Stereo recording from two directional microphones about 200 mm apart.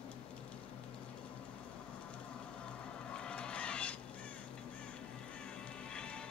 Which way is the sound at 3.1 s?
5° left (ahead or behind).